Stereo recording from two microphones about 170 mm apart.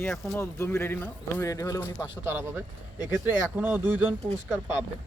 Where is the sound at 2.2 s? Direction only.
15° right (ahead or behind).